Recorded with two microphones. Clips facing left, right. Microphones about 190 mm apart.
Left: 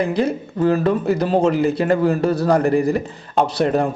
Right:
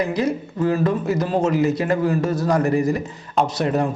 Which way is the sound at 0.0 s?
30° left (ahead or behind).